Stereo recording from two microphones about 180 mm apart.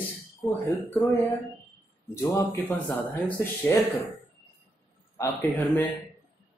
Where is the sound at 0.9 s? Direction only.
15° left (ahead or behind).